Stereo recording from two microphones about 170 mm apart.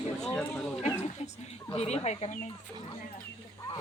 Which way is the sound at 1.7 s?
35° left (ahead or behind).